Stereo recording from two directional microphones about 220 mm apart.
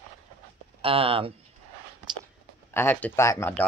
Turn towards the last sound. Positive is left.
turn(degrees=10)  # may be behind; listen again after turning